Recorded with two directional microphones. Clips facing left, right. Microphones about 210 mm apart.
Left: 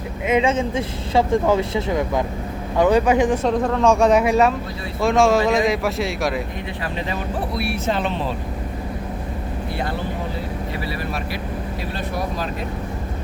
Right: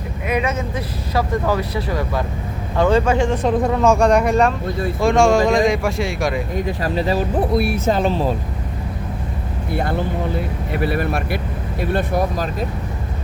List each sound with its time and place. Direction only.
0.3 s a man's voice: 25° left (ahead or behind)
3.4 s speech: 5° right (ahead or behind)
6.7 s speech: 40° right (ahead or behind)
7.3 s speech: 50° right (ahead or behind)
10.7 s speech: 55° right (ahead or behind)